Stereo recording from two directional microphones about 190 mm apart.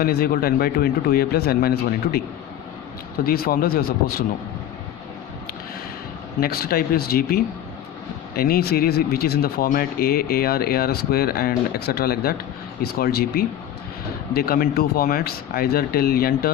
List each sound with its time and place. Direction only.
0.0 s speech: 55° left (ahead or behind)
3.2 s speech: 50° left (ahead or behind)
6.4 s speech: 50° left (ahead or behind)